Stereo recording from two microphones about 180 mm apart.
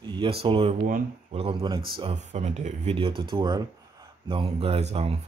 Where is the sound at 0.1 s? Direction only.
30° right (ahead or behind).